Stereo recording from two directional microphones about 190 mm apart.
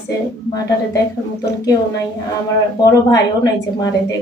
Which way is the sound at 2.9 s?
20° left (ahead or behind).